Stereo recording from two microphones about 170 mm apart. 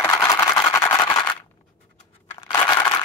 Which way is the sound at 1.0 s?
25° left (ahead or behind).